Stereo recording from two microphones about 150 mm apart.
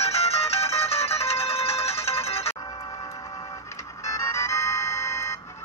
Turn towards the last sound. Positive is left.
turn(degrees=20)  # may be behind; listen again after turning